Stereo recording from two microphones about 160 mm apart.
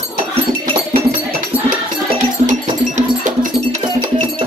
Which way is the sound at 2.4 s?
50° right (ahead or behind).